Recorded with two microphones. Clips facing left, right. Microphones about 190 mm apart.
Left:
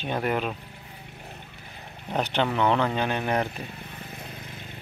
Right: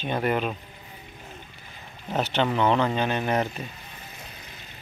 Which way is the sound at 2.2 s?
15° left (ahead or behind).